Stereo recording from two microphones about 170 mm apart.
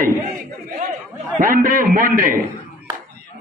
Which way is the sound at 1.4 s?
55° right (ahead or behind).